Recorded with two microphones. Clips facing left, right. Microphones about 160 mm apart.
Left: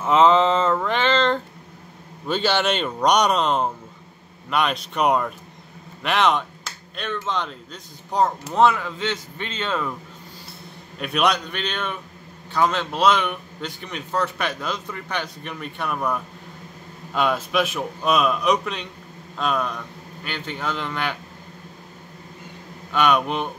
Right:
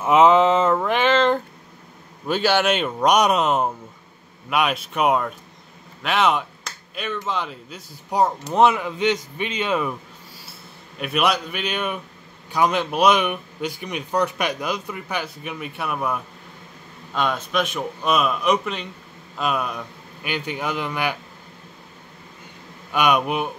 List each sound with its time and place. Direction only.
0.0 s a sound: 10° right (ahead or behind)
2.2 s a man's voice: 5° right (ahead or behind)
11.0 s a man's voice: 5° right (ahead or behind)
22.9 s a man's voice: 10° right (ahead or behind)